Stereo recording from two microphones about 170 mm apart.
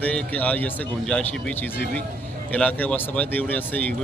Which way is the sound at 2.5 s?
10° left (ahead or behind).